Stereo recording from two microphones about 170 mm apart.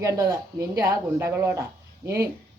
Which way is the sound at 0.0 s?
20° right (ahead or behind).